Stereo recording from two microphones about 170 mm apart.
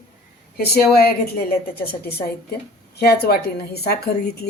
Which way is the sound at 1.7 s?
70° left (ahead or behind).